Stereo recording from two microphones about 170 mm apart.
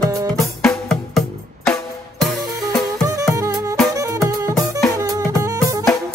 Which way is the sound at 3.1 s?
20° right (ahead or behind).